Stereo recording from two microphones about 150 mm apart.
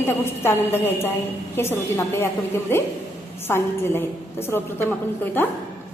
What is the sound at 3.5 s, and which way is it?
A woman's voice, 15° left (ahead or behind).